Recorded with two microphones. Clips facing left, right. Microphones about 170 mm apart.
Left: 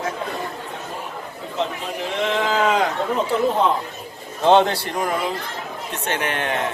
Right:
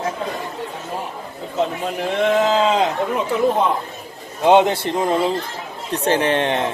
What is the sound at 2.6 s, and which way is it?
Speech, 25° right (ahead or behind).